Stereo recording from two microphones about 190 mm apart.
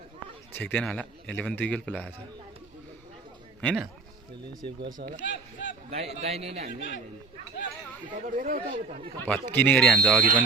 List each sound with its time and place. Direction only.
0.5 s speech: 10° left (ahead or behind)
3.6 s speech: 5° left (ahead or behind)
5.2 s speech: 75° left (ahead or behind)
5.9 s a man's voice: 35° right (ahead or behind)
8.4 s speech: 50° right (ahead or behind)
8.9 s a man's voice: 30° right (ahead or behind)
9.2 s speech: 10° left (ahead or behind)